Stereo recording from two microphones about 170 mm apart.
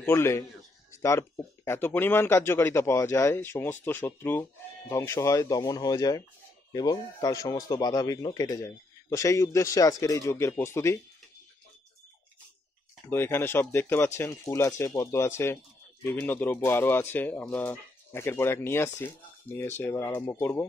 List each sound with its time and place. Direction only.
0.0 s speech: 15° left (ahead or behind)
13.1 s speech: 15° left (ahead or behind)